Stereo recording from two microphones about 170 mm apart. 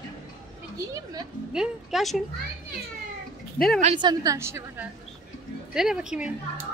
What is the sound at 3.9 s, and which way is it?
Speech, 25° right (ahead or behind).